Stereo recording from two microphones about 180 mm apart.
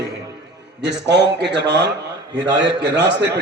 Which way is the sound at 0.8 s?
70° right (ahead or behind).